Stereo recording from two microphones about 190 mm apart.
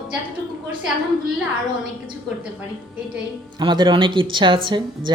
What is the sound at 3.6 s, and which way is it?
Speech, 25° right (ahead or behind).